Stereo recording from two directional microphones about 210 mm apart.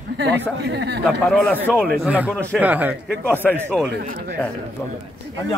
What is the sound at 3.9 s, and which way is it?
Speech, 50° right (ahead or behind).